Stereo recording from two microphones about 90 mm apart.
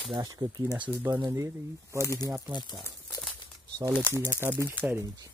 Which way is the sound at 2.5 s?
55° left (ahead or behind).